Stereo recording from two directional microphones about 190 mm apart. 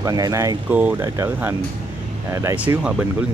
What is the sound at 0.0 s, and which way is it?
Speech, 20° right (ahead or behind).